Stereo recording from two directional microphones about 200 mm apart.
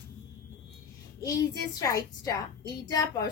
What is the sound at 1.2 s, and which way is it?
A child's voice, 15° left (ahead or behind).